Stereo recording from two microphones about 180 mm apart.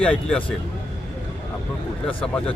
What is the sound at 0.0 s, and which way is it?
Speech, 5° left (ahead or behind).